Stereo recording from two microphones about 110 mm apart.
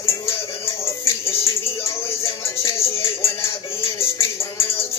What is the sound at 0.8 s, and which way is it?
Music, 25° left (ahead or behind).